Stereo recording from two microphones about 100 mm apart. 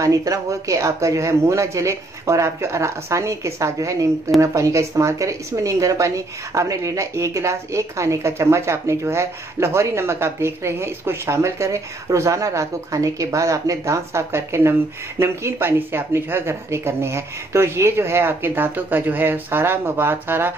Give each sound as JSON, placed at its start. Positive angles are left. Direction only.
{"t": 0.0, "sound": "speech", "side_deg": -35}